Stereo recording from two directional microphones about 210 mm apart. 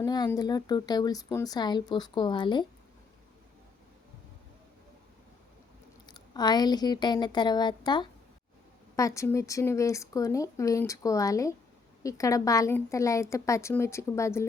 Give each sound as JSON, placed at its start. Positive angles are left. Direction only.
{"t": 0.0, "sound": "a woman's voice", "side_deg": 15}
{"t": 6.1, "sound": "a woman's voice", "side_deg": 20}